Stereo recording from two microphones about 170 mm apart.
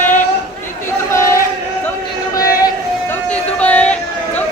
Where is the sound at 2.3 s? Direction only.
20° left (ahead or behind).